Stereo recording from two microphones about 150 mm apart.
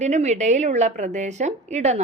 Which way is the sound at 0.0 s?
50° right (ahead or behind).